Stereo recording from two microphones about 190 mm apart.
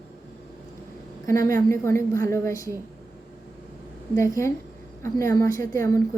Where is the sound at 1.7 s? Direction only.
15° left (ahead or behind).